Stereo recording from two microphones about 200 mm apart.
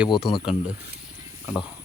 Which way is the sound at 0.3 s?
Centre (ahead or behind).